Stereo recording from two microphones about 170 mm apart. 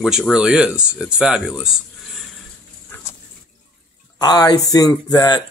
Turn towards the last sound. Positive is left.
turn(degrees=25)  # may be behind; listen again after turning